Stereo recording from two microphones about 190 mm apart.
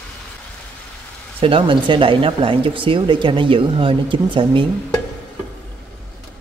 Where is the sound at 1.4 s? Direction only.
25° right (ahead or behind).